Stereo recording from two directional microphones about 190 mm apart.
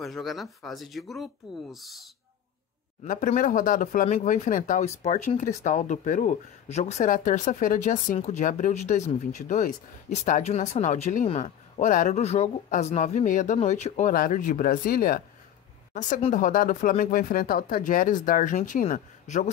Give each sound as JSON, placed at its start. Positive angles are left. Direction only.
{"t": 0.0, "sound": "speech", "side_deg": 0}
{"t": 3.1, "sound": "a woman's voice", "side_deg": 45}